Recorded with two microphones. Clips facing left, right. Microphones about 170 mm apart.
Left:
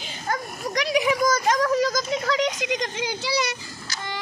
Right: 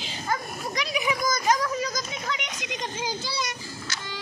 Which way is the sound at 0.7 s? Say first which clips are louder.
Left 8 dB; 75° left (ahead or behind).